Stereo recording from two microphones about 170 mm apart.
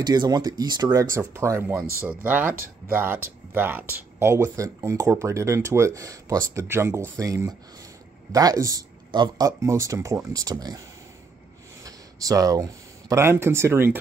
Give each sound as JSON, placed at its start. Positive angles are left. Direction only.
{"t": 0.0, "sound": "speech", "side_deg": -25}
{"t": 11.8, "sound": "speech", "side_deg": -20}